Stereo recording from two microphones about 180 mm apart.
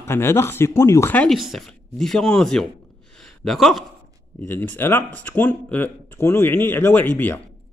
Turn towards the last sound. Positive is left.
turn(degrees=10)  # may be behind; listen again after turning